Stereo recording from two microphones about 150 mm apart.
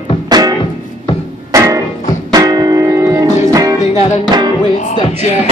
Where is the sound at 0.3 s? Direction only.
25° right (ahead or behind).